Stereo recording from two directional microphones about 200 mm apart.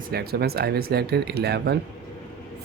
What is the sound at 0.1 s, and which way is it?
Speech, 50° right (ahead or behind).